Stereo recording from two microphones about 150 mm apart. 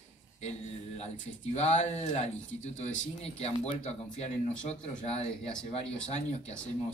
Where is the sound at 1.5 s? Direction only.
45° left (ahead or behind).